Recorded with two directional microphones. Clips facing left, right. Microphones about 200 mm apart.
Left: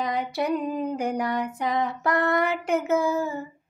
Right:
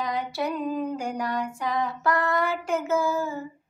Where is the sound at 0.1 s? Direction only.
20° left (ahead or behind).